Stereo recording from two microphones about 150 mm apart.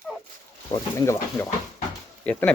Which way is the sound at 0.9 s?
20° left (ahead or behind).